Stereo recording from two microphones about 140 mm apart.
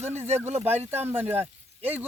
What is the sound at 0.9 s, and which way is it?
Speech, 15° right (ahead or behind).